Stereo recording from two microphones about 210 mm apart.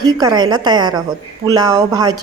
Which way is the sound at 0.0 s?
15° right (ahead or behind).